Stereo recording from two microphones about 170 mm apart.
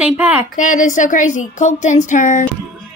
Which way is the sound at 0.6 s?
50° left (ahead or behind).